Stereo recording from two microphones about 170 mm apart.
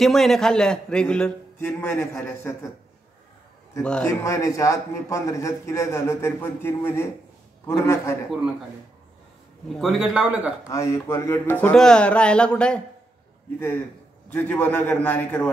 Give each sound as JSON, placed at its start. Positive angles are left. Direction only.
{"t": 0.0, "sound": "a man's voice", "side_deg": 0}
{"t": 3.8, "sound": "a man's voice", "side_deg": 5}
{"t": 4.1, "sound": "a man's voice", "side_deg": 15}
{"t": 9.8, "sound": "a man's voice", "side_deg": 0}
{"t": 10.7, "sound": "a man's voice", "side_deg": 15}
{"t": 14.3, "sound": "a man's voice", "side_deg": 10}